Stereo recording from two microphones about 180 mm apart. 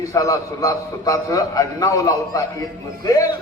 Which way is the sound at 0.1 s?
20° left (ahead or behind).